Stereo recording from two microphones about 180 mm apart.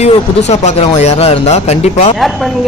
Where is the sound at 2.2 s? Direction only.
Centre (ahead or behind).